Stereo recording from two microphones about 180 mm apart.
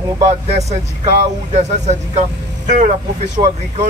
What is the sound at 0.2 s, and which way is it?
Speech, 35° right (ahead or behind).